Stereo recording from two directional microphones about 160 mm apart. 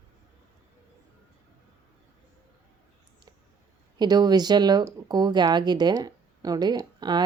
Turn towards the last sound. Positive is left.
turn(degrees=-25)  # may be behind; listen again after turning